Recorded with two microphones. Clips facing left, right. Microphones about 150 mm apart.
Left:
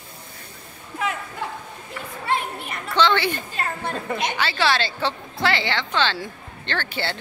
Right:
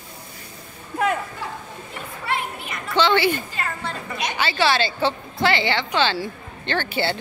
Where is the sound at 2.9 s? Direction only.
5° right (ahead or behind).